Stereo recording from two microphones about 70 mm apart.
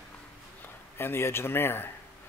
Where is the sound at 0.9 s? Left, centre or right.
Left.